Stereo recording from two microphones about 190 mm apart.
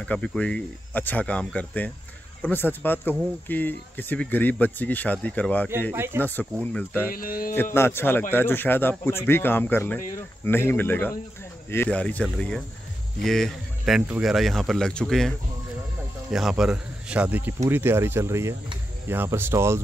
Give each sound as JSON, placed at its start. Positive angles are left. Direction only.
{"t": 0.0, "sound": "speech", "side_deg": 5}
{"t": 5.7, "sound": "speech", "side_deg": -10}
{"t": 6.2, "sound": "speech", "side_deg": 10}
{"t": 7.1, "sound": "speech", "side_deg": 50}
{"t": 7.7, "sound": "a man's voice", "side_deg": 15}